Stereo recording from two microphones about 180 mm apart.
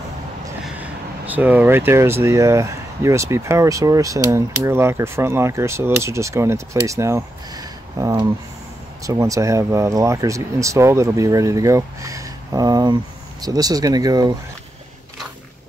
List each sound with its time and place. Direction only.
0.7 s speech: 10° right (ahead or behind)